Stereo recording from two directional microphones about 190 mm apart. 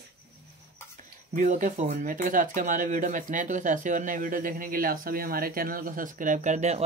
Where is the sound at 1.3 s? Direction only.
45° right (ahead or behind).